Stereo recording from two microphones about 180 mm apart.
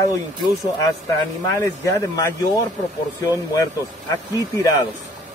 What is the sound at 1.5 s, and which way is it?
Speech, 20° left (ahead or behind).